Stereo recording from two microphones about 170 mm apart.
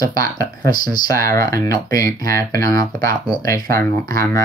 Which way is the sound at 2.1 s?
60° right (ahead or behind).